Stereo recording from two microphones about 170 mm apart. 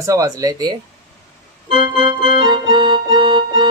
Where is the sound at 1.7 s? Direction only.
30° right (ahead or behind).